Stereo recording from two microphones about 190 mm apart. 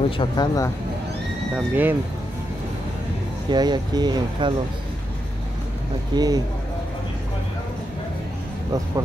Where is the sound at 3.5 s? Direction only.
20° right (ahead or behind).